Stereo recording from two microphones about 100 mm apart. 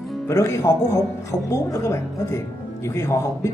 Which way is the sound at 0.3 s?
30° left (ahead or behind).